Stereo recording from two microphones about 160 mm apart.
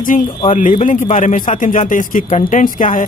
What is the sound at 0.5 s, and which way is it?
A man's voice, 50° left (ahead or behind).